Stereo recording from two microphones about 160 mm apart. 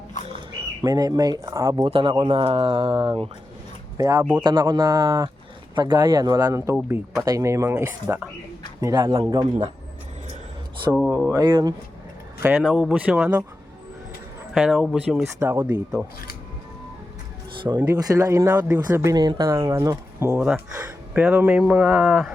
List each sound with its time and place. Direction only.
0.8 s speech: 25° right (ahead or behind)
1.9 s speech: 30° right (ahead or behind)
3.9 s speech: 20° right (ahead or behind)
4.4 s speech: 30° right (ahead or behind); by 8.3 s 10° right (ahead or behind)
8.8 s speech: 25° right (ahead or behind)
11.3 s speech: 25° right (ahead or behind)
12.4 s speech: 5° right (ahead or behind)
14.5 s speech: centre (ahead or behind)
15.4 s speech: 15° right (ahead or behind)
17.6 s speech: 25° right (ahead or behind); by 22.3 s 5° right (ahead or behind)